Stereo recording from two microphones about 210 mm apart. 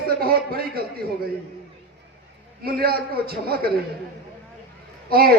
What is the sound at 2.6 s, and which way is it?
A man's voice, 45° right (ahead or behind).